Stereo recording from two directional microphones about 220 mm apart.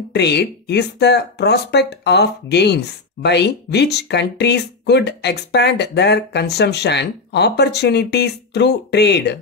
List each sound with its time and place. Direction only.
0.1 s speech: 50° left (ahead or behind)